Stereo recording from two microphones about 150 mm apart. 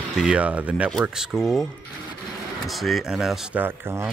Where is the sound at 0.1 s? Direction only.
5° right (ahead or behind).